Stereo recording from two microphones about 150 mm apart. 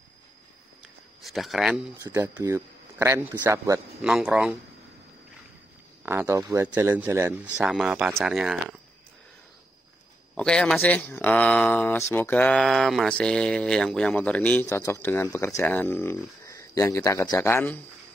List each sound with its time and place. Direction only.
1.2 s a man's voice: centre (ahead or behind)
2.0 s speech: 15° right (ahead or behind)
4.0 s a man's voice: 5° right (ahead or behind)
6.0 s speech: 15° right (ahead or behind)
10.3 s speech: 5° left (ahead or behind)